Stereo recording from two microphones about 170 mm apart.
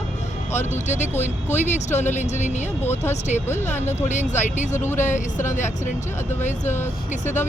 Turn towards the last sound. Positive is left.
turn(degrees=45)  # may be behind; listen again after turning